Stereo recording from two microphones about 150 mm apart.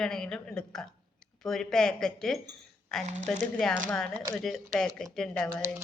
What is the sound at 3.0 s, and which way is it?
Speech, 50° right (ahead or behind).